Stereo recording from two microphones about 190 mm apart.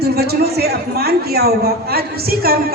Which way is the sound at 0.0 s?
55° right (ahead or behind).